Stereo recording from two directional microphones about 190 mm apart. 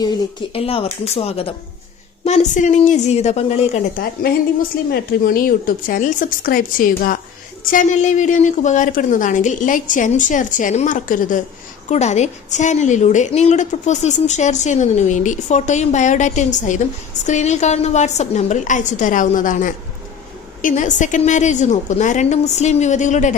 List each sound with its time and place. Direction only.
0.5 s a woman's voice: 30° left (ahead or behind)
4.9 s a woman's voice: 50° left (ahead or behind)